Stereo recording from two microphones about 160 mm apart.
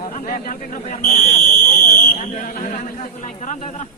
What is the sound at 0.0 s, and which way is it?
A man's voice, 60° left (ahead or behind).